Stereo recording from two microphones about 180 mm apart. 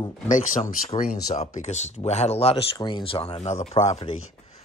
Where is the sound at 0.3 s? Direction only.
40° left (ahead or behind).